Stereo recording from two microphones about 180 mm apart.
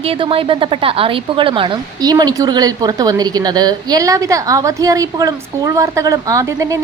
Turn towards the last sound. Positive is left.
turn(degrees=-20)  # may be behind; listen again after turning